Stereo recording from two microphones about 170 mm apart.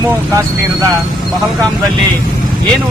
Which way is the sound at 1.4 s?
5° left (ahead or behind).